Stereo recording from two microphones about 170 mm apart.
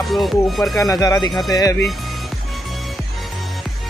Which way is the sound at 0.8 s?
20° left (ahead or behind).